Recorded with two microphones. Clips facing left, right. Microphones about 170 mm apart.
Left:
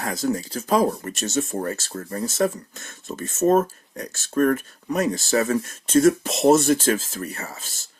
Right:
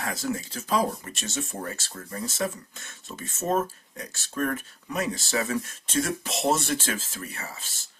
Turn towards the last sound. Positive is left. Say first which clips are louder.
# left 6 dB
turn(degrees=45)  # may be behind; listen again after turning